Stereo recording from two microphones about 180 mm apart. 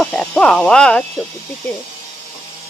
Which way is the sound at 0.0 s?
5° left (ahead or behind).